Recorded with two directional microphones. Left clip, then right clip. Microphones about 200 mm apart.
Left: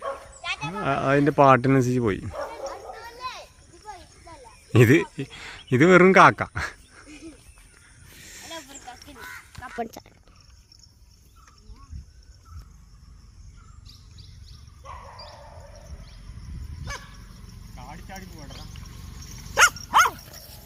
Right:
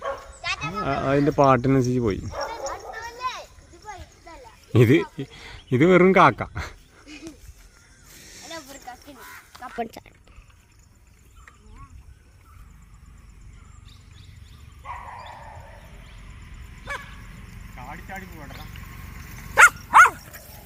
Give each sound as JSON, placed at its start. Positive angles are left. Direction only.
{"t": 0.6, "sound": "speech", "side_deg": 0}
{"t": 2.3, "sound": "gargling", "side_deg": 45}
{"t": 4.3, "sound": "speech", "side_deg": 0}
{"t": 8.2, "sound": "snake", "side_deg": 0}
{"t": 9.7, "sound": "speech", "side_deg": 5}
{"t": 17.7, "sound": "vehicle", "side_deg": 5}
{"t": 18.3, "sound": "a sound", "side_deg": -10}
{"t": 19.5, "sound": "dog", "side_deg": 10}